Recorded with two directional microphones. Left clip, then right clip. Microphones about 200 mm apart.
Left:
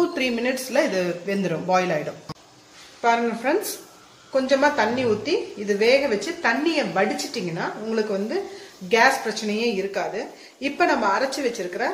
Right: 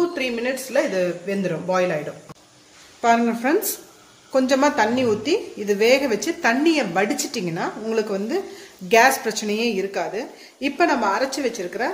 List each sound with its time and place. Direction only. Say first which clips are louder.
0.0 s a man's voice: even; centre (ahead or behind)
3.0 s a woman's voice: right 2 dB; 45° right (ahead or behind)